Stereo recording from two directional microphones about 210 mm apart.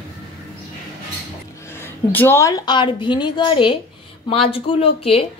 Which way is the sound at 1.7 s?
10° left (ahead or behind).